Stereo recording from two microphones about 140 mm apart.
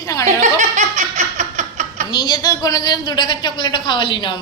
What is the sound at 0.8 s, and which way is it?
Laughter, 60° right (ahead or behind).